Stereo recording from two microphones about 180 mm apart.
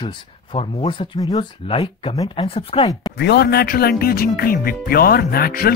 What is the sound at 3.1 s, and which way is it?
Speech, 65° left (ahead or behind).